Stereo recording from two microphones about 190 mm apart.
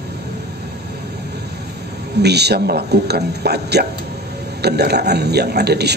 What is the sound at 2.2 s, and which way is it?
A man's voice, 60° right (ahead or behind).